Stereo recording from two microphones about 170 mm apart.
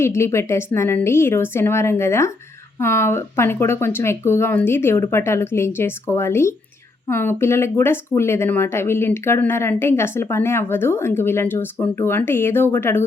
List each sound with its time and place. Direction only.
0.0 s speech: 15° left (ahead or behind)